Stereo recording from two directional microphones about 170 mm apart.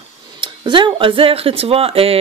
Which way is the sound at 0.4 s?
30° right (ahead or behind).